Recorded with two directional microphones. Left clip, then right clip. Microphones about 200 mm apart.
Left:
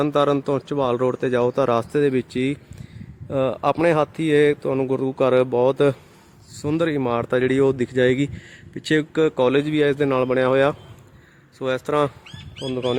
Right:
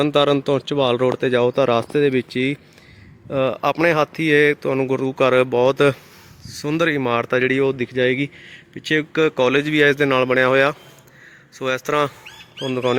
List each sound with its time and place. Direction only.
0.0 s speech: centre (ahead or behind); by 9.0 s 20° left (ahead or behind)
9.1 s speech: 5° left (ahead or behind)
12.6 s speech: 5° right (ahead or behind)